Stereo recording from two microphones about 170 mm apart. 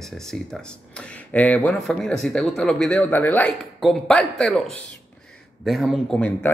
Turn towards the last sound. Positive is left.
turn(degrees=10)  # may be behind; listen again after turning